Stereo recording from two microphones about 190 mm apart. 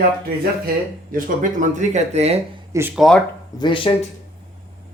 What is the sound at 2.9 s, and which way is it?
Speech, centre (ahead or behind).